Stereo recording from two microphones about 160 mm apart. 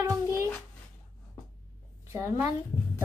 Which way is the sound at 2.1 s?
15° right (ahead or behind).